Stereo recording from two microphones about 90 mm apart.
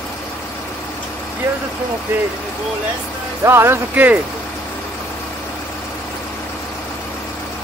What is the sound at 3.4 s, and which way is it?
Speech, 30° right (ahead or behind).